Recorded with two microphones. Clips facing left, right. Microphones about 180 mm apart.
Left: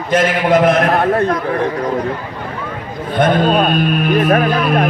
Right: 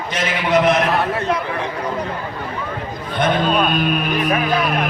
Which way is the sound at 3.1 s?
50° left (ahead or behind).